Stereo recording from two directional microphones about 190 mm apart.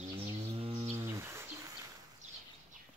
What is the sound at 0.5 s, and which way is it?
Livestock, 30° right (ahead or behind).